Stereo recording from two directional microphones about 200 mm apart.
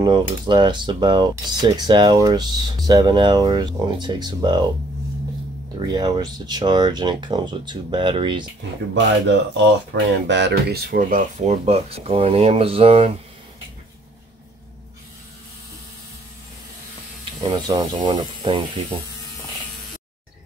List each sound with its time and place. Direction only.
0.0 s speech: 20° right (ahead or behind)
5.8 s speech: 20° right (ahead or behind)
9.3 s speech: 60° right (ahead or behind); by 13.2 s 30° right (ahead or behind)
17.5 s speech: 20° right (ahead or behind)